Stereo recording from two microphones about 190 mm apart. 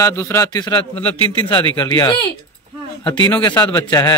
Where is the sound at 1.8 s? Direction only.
20° left (ahead or behind).